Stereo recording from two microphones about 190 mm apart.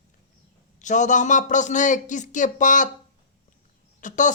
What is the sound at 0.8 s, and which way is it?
A man's voice, 40° left (ahead or behind).